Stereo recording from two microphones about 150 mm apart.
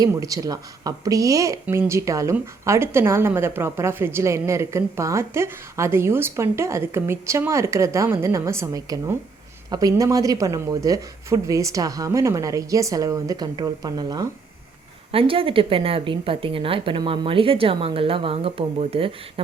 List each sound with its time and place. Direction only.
0.0 s a woman's voice: 25° right (ahead or behind); by 19.1 s 40° right (ahead or behind)